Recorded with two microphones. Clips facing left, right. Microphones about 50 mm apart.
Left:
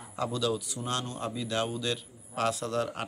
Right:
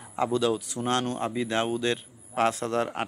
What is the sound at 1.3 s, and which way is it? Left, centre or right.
Speech, right.